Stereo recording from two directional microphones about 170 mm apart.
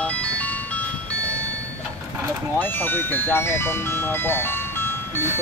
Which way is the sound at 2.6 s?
10° left (ahead or behind).